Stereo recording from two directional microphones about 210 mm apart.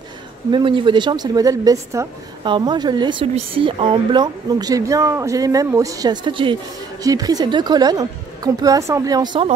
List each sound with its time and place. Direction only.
0.5 s a woman's voice: 25° right (ahead or behind)